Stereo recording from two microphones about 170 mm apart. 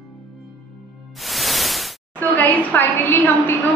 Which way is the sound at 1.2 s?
Centre (ahead or behind).